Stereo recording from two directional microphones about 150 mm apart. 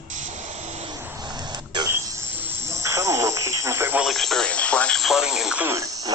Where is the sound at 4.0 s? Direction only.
Centre (ahead or behind).